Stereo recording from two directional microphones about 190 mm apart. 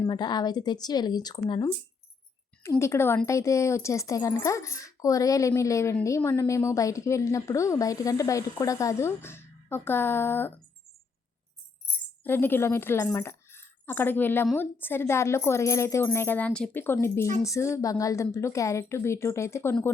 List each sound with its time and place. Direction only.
0.0 s speech: 20° left (ahead or behind)
12.2 s speech: 10° left (ahead or behind)